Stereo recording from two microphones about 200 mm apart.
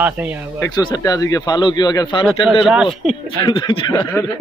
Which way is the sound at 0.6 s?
15° left (ahead or behind).